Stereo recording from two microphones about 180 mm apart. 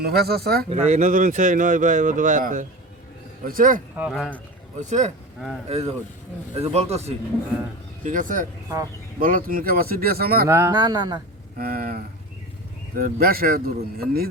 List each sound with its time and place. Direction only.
0.0 s a man's voice: 60° right (ahead or behind)
0.9 s speech: 45° right (ahead or behind)
3.9 s speech: 5° right (ahead or behind)
4.8 s a man's voice: 40° right (ahead or behind)
8.0 s a man's voice: 45° right (ahead or behind)
10.5 s speech: 20° right (ahead or behind)
11.5 s a man's voice: 55° right (ahead or behind)
13.0 s a man's voice: 55° right (ahead or behind)